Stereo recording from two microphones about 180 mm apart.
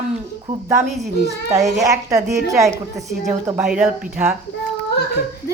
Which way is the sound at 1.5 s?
Centre (ahead or behind).